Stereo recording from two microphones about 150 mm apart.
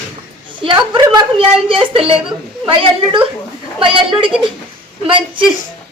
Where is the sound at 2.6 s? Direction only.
35° right (ahead or behind).